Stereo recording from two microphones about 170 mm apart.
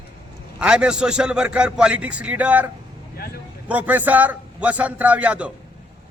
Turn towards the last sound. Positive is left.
turn(degrees=-5)  # may be behind; listen again after turning